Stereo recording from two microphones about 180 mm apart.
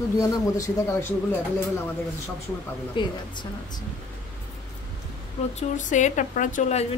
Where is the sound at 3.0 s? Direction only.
25° left (ahead or behind).